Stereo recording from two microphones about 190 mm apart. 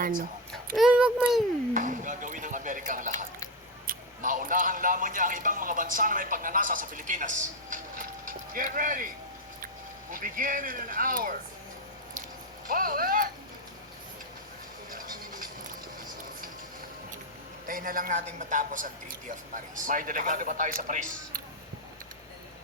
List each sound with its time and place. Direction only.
0.0 s a child's voice: 45° right (ahead or behind)
0.5 s a child's voice: 5° right (ahead or behind)
1.7 s a man's voice: 45° right (ahead or behind)
10.1 s a man's voice: 45° right (ahead or behind)
12.6 s a man's voice: 50° right (ahead or behind)
14.8 s a sound: 50° right (ahead or behind)
17.7 s a man's voice: 45° right (ahead or behind)